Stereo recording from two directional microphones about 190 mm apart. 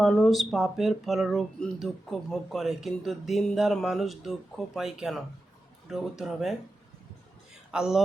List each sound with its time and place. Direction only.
0.0 s speech: centre (ahead or behind)
7.7 s speech: 5° right (ahead or behind)